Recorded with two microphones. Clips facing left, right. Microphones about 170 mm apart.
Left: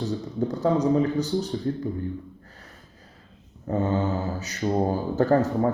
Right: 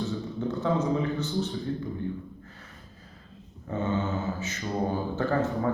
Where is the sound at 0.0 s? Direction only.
40° left (ahead or behind).